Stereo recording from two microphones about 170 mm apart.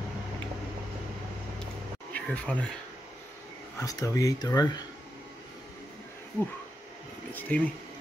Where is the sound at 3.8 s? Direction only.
20° left (ahead or behind).